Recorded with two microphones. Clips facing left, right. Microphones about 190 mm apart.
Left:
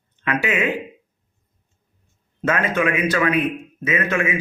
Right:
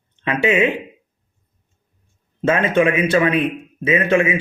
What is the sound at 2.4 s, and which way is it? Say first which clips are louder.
Speech: right 5 dB; 25° right (ahead or behind).